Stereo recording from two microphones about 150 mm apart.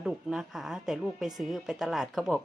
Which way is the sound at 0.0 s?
5° right (ahead or behind).